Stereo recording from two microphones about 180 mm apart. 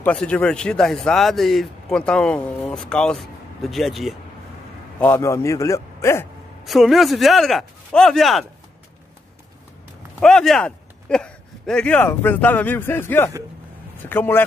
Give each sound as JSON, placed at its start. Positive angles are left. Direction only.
{"t": 0.0, "sound": "speech", "side_deg": 5}
{"t": 4.9, "sound": "a man's voice", "side_deg": 10}
{"t": 6.6, "sound": "speech", "side_deg": 0}
{"t": 10.2, "sound": "a man's voice", "side_deg": 0}